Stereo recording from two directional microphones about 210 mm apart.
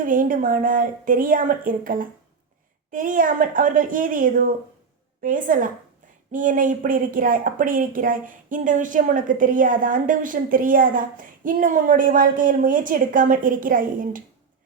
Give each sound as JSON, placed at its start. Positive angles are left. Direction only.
{"t": 0.0, "sound": "speech", "side_deg": -40}